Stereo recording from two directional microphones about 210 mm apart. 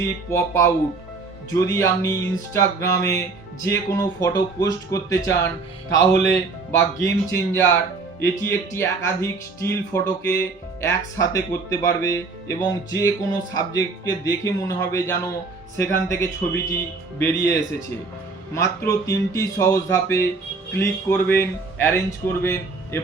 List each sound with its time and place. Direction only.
0.3 s speech: 15° left (ahead or behind)
7.0 s speech: 15° left (ahead or behind)